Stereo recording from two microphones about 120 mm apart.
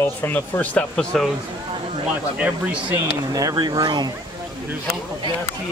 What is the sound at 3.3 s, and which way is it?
Speech, 35° right (ahead or behind).